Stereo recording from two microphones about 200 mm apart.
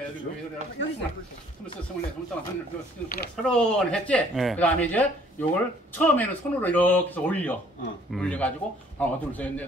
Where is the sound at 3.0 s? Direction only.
45° left (ahead or behind).